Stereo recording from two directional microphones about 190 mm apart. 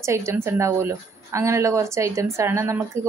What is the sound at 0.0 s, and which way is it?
A woman's voice, 15° right (ahead or behind).